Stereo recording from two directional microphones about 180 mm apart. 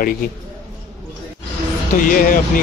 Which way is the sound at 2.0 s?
50° left (ahead or behind).